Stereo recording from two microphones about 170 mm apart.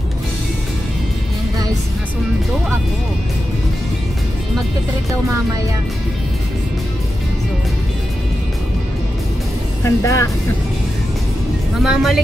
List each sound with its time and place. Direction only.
9.8 s speech: 20° left (ahead or behind)
11.8 s speech: centre (ahead or behind)